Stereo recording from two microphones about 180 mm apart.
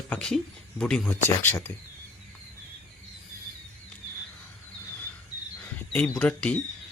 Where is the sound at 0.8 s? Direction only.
5° left (ahead or behind).